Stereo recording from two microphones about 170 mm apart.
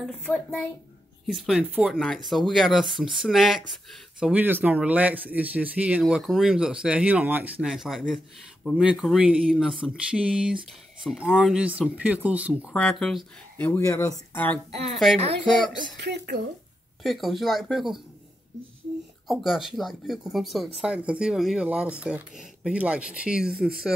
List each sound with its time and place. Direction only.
0.0 s speech: 5° left (ahead or behind)
13.6 s speech: 15° left (ahead or behind)
14.5 s speech: centre (ahead or behind)
16.0 s speech: 75° right (ahead or behind)
17.0 s speech: centre (ahead or behind)
19.2 s speech: centre (ahead or behind)